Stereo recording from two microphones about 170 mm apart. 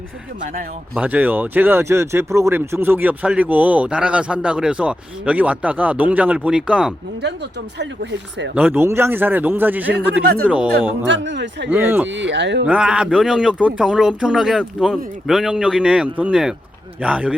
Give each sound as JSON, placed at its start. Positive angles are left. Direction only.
{"t": 0.9, "sound": "speech", "side_deg": -10}
{"t": 8.5, "sound": "speech", "side_deg": -10}
{"t": 11.1, "sound": "speech", "side_deg": -90}
{"t": 11.7, "sound": "speech", "side_deg": -10}
{"t": 12.0, "sound": "speech", "side_deg": -90}
{"t": 12.6, "sound": "speech", "side_deg": -5}